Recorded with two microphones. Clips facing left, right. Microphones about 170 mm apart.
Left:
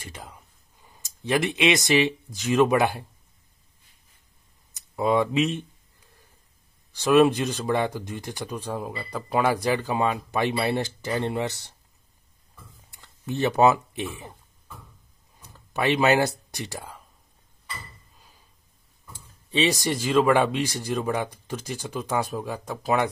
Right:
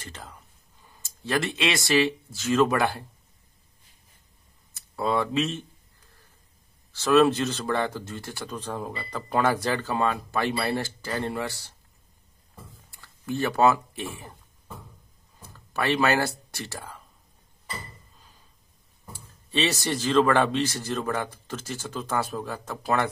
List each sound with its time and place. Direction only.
0.0 s speech: 10° left (ahead or behind)
4.7 s speech: 15° left (ahead or behind)
6.9 s speech: 15° left (ahead or behind)
12.9 s speech: 20° left (ahead or behind)
15.5 s speech: 15° left (ahead or behind)
19.1 s speech: 15° left (ahead or behind)